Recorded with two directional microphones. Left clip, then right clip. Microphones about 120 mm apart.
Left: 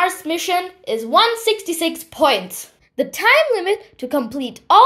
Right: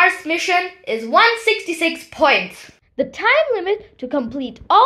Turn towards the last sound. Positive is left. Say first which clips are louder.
# left 2 dB
turn(degrees=30)  # may be behind; listen again after turning